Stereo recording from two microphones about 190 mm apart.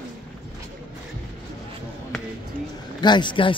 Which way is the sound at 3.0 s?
25° left (ahead or behind).